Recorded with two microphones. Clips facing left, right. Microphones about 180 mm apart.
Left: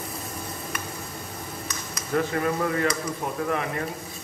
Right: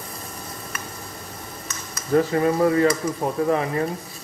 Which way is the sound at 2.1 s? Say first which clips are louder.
Right 6 dB; 30° right (ahead or behind).